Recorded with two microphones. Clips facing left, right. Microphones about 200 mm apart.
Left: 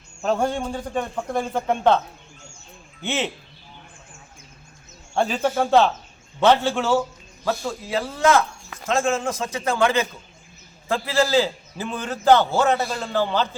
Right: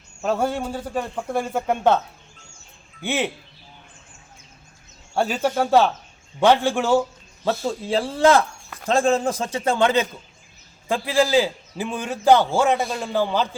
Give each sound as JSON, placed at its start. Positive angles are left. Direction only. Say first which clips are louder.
{"t": 0.2, "sound": "a man's voice", "louder": "even", "side_deg": -5}
{"t": 3.1, "sound": "a man's voice", "louder": "right 2 dB", "side_deg": -15}
{"t": 5.1, "sound": "a man's voice", "louder": "even", "side_deg": -10}
{"t": 7.6, "sound": "a man's voice", "louder": "right 3 dB", "side_deg": -30}